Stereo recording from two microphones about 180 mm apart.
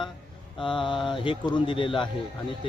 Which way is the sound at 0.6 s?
25° left (ahead or behind).